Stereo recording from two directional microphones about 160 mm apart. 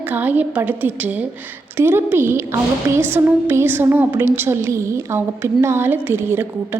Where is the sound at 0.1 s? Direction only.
10° right (ahead or behind).